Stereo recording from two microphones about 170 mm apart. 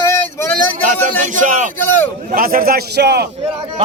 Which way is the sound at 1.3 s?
50° right (ahead or behind).